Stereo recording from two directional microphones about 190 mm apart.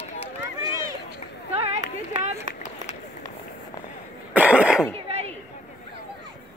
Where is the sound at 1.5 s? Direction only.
35° right (ahead or behind).